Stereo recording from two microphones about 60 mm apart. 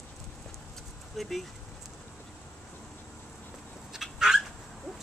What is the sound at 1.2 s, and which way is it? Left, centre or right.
Speech, centre.